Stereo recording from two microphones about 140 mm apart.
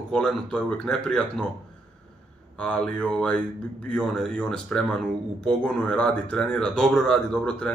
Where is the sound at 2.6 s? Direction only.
10° left (ahead or behind).